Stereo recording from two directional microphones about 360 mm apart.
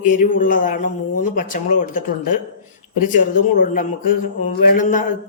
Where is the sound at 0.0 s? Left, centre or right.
Left.